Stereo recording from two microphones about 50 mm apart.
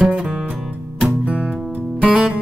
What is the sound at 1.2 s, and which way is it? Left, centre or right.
Music, right.